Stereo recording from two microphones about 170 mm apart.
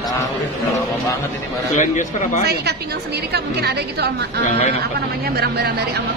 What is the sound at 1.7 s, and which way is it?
Speech, 45° left (ahead or behind).